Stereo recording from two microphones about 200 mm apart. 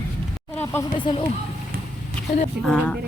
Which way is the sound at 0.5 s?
10° left (ahead or behind).